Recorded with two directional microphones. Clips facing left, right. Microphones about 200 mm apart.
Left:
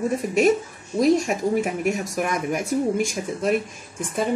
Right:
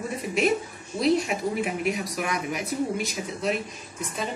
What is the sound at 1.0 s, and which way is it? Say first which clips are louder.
Speech: left 4 dB; 45° left (ahead or behind).